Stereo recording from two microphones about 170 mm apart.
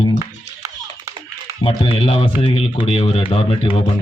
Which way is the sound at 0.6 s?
15° right (ahead or behind).